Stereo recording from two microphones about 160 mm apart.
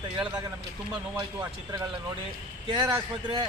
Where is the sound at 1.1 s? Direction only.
20° right (ahead or behind).